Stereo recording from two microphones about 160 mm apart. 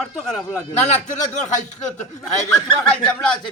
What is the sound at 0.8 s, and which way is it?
Speech, 50° left (ahead or behind).